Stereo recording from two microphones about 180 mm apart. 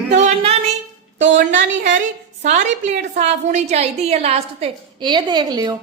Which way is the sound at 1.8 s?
45° right (ahead or behind).